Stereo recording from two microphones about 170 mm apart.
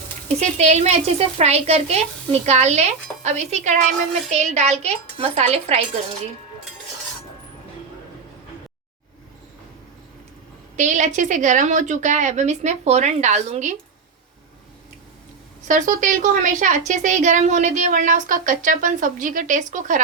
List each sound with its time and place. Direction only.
0.3 s speech: 40° right (ahead or behind)
10.8 s a woman's voice: 45° right (ahead or behind)
15.6 s a woman's voice: 50° right (ahead or behind)